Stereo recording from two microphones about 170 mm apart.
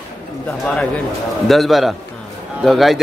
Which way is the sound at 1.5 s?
Centre (ahead or behind).